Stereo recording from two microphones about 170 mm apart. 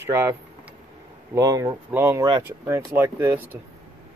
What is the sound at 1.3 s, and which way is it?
Speech, 20° right (ahead or behind).